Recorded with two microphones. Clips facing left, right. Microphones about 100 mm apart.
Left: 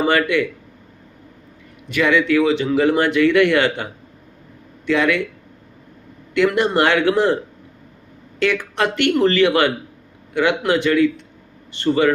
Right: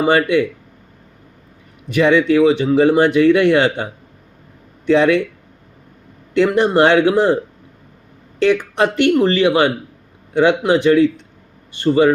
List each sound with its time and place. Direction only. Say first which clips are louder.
0.0 s speech: right 3 dB; 20° right (ahead or behind)
1.9 s speech: right 4 dB; 20° right (ahead or behind)
4.9 s speech: right 5 dB; 25° right (ahead or behind)
6.3 s speech: right 3 dB; 20° right (ahead or behind)
8.4 s speech: right 4 dB; 20° right (ahead or behind)